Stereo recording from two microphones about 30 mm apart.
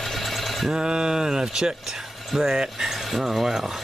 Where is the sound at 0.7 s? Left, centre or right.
Right.